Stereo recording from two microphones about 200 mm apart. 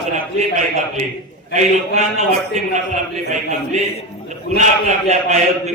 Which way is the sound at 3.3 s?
35° right (ahead or behind).